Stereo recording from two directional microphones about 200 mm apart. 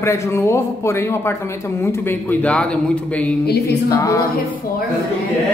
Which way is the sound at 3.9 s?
15° left (ahead or behind).